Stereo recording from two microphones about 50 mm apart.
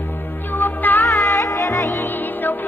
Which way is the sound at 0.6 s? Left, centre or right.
Left.